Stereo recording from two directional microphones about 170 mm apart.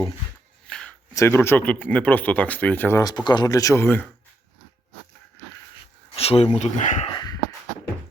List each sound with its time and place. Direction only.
0.7 s a sound: 5° left (ahead or behind)
1.1 s speech: 15° left (ahead or behind)
3.0 s speech: 25° left (ahead or behind)
6.1 s speech: 35° left (ahead or behind)